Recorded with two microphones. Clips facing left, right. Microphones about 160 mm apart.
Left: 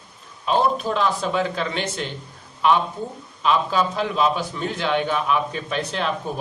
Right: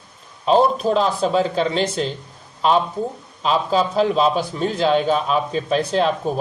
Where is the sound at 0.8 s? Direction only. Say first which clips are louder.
Right 4 dB; 35° right (ahead or behind).